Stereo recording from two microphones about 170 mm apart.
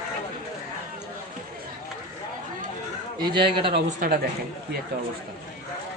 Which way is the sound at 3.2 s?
25° right (ahead or behind).